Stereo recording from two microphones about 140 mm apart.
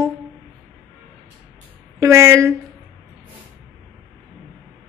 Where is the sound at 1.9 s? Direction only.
20° right (ahead or behind).